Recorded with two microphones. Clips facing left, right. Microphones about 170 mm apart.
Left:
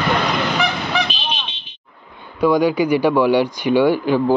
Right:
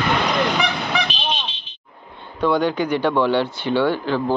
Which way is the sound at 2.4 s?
10° left (ahead or behind).